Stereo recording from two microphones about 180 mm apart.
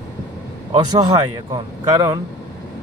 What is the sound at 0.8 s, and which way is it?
Speech, 20° right (ahead or behind).